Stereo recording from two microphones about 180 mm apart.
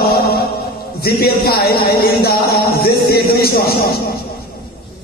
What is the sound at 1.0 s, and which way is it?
Speech, 60° left (ahead or behind).